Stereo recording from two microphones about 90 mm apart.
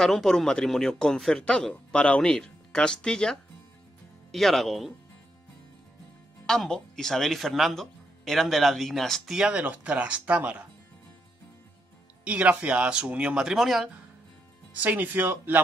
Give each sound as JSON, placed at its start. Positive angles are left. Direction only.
{"t": 0.0, "sound": "speech", "side_deg": 5}
{"t": 6.4, "sound": "speech", "side_deg": 5}
{"t": 12.3, "sound": "speech", "side_deg": -15}
{"t": 14.7, "sound": "speech", "side_deg": -15}